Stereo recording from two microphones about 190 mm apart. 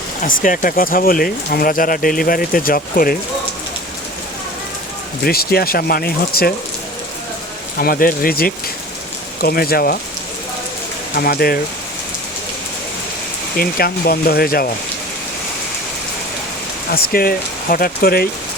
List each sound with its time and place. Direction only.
0.2 s speech: 45° left (ahead or behind)
5.2 s speech: 55° left (ahead or behind)
7.8 s speech: 50° left (ahead or behind)
11.1 s speech: 55° left (ahead or behind)
13.6 s speech: 50° left (ahead or behind)
16.9 s speech: 50° left (ahead or behind)